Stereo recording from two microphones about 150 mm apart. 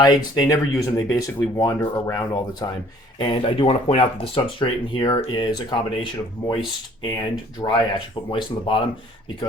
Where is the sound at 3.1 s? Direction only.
35° left (ahead or behind).